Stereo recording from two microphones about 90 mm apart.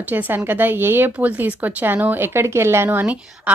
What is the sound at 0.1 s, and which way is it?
Speech, 20° right (ahead or behind).